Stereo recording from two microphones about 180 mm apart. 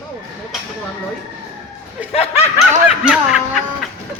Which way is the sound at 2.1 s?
35° left (ahead or behind).